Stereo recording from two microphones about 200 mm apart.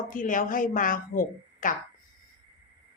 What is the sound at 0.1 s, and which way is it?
A woman's voice, 40° left (ahead or behind).